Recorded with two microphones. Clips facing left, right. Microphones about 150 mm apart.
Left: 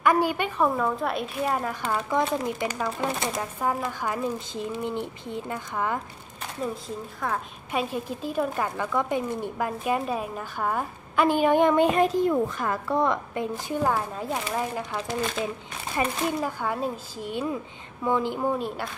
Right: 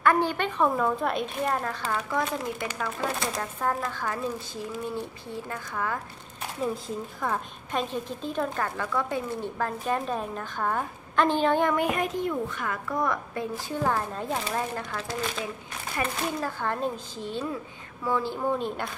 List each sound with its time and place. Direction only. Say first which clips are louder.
0.0 s speech: left 1 dB; 10° left (ahead or behind)
2.0 s speech: left 5 dB; 20° left (ahead or behind)
7.2 s a woman's voice: left 1 dB; centre (ahead or behind)